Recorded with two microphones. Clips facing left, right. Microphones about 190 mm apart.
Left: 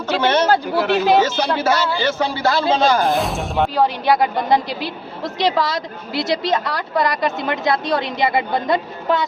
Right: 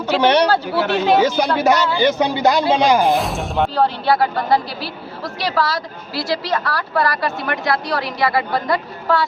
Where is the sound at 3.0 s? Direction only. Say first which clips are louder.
Right 1 dB; centre (ahead or behind).